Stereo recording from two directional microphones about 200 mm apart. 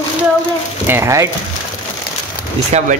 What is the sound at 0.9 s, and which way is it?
Speech, 15° right (ahead or behind).